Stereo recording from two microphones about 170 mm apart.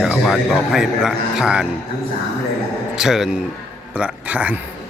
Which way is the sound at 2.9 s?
5° right (ahead or behind).